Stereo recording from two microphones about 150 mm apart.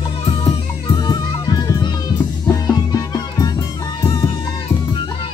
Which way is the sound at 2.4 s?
25° left (ahead or behind).